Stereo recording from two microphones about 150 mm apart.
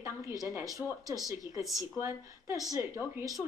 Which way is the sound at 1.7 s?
20° right (ahead or behind).